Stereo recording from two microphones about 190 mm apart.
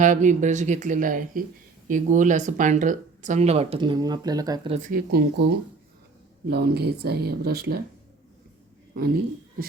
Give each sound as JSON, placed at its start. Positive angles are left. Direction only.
{"t": 0.0, "sound": "speech", "side_deg": -40}
{"t": 4.7, "sound": "speech", "side_deg": -45}
{"t": 6.5, "sound": "speech", "side_deg": -55}
{"t": 9.0, "sound": "speech", "side_deg": -50}